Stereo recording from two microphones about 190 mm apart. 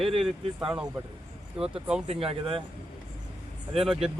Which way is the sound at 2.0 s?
30° right (ahead or behind).